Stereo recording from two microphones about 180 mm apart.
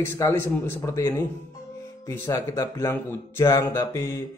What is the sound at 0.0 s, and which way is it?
Speech, 15° left (ahead or behind).